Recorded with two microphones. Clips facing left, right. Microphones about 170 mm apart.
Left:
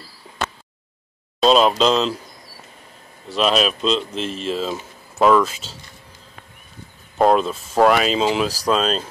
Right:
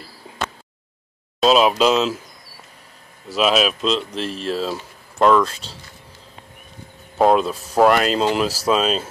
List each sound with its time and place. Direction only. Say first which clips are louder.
1.4 s speech: even; 5° right (ahead or behind)
3.3 s speech: right 1 dB; 5° right (ahead or behind)
7.2 s speech: even; centre (ahead or behind)